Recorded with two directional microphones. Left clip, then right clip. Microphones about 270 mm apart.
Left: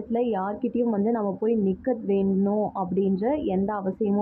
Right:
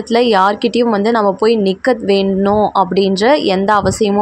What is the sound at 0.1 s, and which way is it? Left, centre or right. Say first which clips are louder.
A woman's voice: right 15 dB; right.